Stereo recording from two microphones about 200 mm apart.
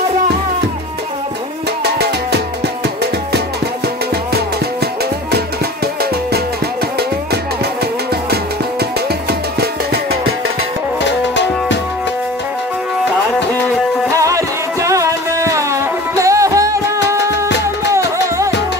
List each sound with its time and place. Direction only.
11.1 s music: 60° left (ahead or behind)
14.1 s music: 15° right (ahead or behind)
17.3 s music: 60° left (ahead or behind)